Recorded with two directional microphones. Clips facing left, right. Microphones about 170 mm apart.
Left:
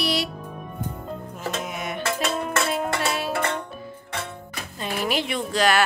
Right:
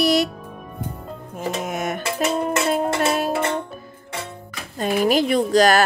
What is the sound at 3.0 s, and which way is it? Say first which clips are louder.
Music: right 6 dB; 45° right (ahead or behind).